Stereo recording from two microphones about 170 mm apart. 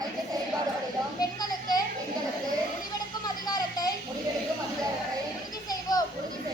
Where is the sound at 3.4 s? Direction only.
25° left (ahead or behind).